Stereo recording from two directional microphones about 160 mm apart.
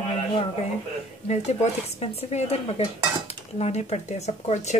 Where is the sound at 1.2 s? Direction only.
45° left (ahead or behind).